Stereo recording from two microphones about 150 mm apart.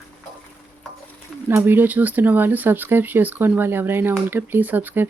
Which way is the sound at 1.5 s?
15° right (ahead or behind).